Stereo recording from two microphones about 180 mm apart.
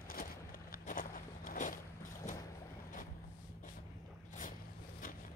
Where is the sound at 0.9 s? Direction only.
50° left (ahead or behind).